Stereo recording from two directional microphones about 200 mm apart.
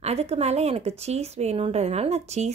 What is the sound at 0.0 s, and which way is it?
Speech, 30° right (ahead or behind).